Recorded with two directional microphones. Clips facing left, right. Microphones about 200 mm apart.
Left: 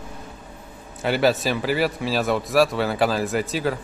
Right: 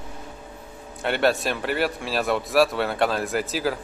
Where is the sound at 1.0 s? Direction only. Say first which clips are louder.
Left 2 dB; centre (ahead or behind).